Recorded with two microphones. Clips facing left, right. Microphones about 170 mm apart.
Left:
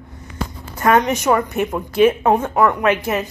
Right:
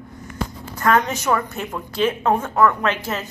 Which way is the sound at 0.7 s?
20° left (ahead or behind).